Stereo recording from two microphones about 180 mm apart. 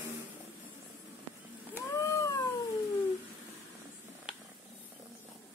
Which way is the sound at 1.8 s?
15° left (ahead or behind).